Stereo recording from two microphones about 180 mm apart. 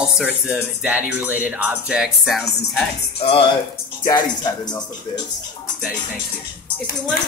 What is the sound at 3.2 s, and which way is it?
Speech, 30° left (ahead or behind).